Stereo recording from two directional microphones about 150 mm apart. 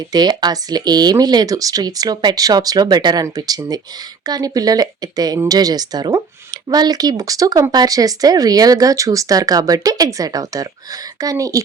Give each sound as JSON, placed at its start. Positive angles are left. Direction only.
{"t": 0.1, "sound": "speech", "side_deg": -30}